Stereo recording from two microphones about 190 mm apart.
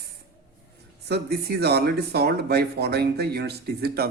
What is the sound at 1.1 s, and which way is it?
Speech, 55° right (ahead or behind).